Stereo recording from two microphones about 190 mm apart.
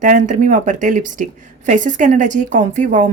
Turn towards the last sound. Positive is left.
turn(degrees=-40)  # may be behind; listen again after turning